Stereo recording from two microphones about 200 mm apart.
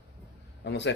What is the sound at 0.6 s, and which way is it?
Speech, 60° left (ahead or behind).